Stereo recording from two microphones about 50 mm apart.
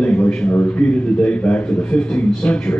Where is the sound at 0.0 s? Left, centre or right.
Left.